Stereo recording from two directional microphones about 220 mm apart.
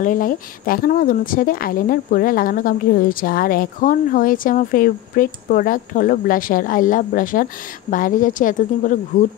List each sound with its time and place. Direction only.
0.0 s speech: 40° left (ahead or behind)